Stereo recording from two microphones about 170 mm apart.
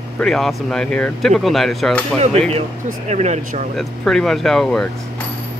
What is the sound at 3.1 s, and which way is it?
Speech, 40° right (ahead or behind).